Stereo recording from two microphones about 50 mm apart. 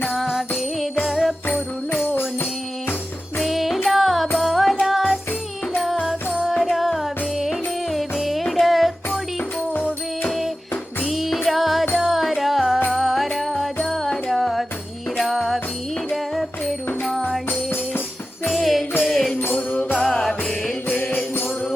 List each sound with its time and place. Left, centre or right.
0.1 s music: centre
1.0 s jingle bell: centre
2.0 s music: left
3.3 s music: centre
6.6 s music: centre
10.2 s music: centre
18.4 s music: centre
19.4 s music: left
20.8 s music: left